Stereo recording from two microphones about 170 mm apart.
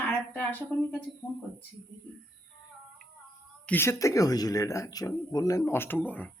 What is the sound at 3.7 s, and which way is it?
A woman's voice, 15° left (ahead or behind).